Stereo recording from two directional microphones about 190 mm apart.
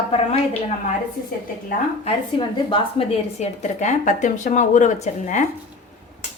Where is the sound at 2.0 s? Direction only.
25° left (ahead or behind).